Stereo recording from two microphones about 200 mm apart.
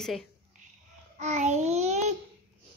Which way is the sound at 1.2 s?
35° right (ahead or behind).